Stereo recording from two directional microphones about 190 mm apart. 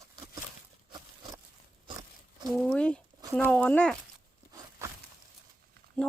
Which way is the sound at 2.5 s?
Centre (ahead or behind).